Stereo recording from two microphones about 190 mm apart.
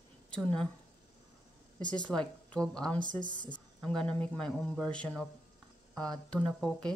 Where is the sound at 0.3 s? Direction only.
5° left (ahead or behind).